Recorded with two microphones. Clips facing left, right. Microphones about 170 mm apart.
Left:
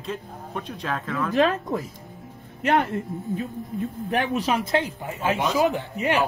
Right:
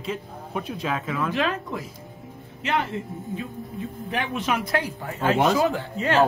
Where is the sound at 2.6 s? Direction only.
55° left (ahead or behind).